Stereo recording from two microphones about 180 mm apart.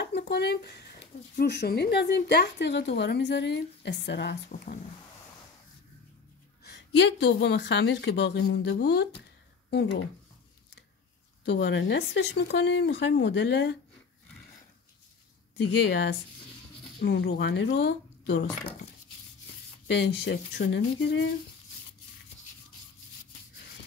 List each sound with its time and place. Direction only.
0.3 s a woman's voice: 65° left (ahead or behind)
6.6 s a woman's voice: 70° left (ahead or behind)
11.4 s a woman's voice: 75° left (ahead or behind)
15.5 s a woman's voice: 70° left (ahead or behind)
19.9 s a woman's voice: 75° left (ahead or behind)